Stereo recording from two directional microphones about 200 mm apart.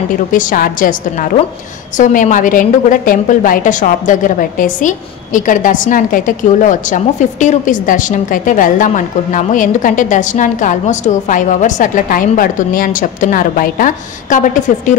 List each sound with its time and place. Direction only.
0.3 s a woman's voice: 40° left (ahead or behind)